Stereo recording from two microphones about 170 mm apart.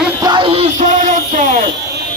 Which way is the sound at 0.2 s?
25° right (ahead or behind).